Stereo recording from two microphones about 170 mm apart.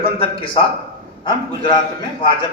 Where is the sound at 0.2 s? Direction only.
30° left (ahead or behind).